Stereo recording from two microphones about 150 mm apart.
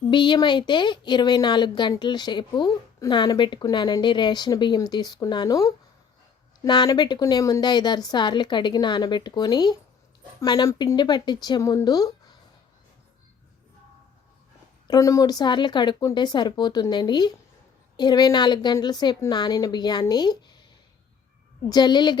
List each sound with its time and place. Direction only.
0.1 s speech: 30° left (ahead or behind)
14.8 s speech: 20° left (ahead or behind)
21.7 s speech: 30° left (ahead or behind)